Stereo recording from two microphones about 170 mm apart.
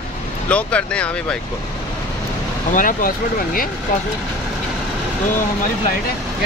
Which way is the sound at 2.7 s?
55° left (ahead or behind).